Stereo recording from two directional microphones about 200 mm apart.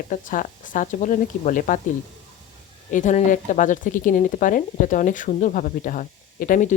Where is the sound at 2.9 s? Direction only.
40° left (ahead or behind).